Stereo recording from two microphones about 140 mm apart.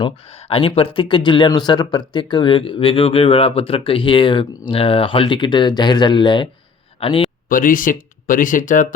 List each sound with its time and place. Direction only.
0.0 s speech: 45° left (ahead or behind)
7.4 s speech: 80° left